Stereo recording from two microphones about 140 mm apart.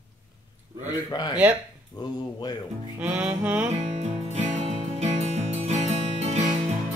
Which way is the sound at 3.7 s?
55° right (ahead or behind).